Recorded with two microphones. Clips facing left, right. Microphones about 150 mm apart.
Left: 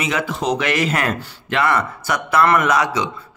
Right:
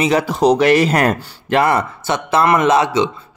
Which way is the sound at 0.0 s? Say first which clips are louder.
Right 8 dB; 35° right (ahead or behind).